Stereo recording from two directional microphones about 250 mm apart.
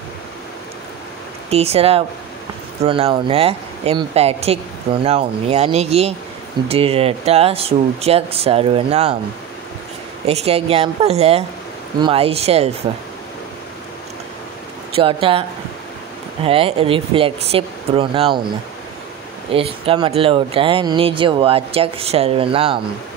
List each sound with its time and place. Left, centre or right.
1.5 s speech: right
10.2 s speech: right
15.0 s speech: right
16.4 s speech: right
19.5 s speech: right